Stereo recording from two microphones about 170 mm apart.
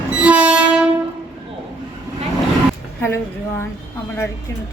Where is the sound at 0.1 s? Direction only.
5° right (ahead or behind).